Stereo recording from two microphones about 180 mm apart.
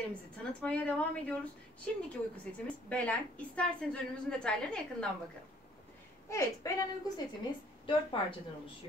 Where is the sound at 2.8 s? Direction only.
10° left (ahead or behind).